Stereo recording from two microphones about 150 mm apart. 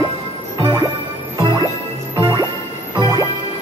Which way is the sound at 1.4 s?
35° right (ahead or behind).